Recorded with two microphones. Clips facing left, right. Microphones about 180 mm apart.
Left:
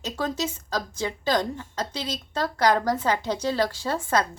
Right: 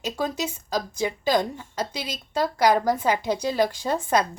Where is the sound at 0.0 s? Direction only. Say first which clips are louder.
Right 1 dB; 10° right (ahead or behind).